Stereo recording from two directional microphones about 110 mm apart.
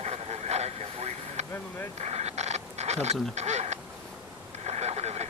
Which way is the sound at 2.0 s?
85° right.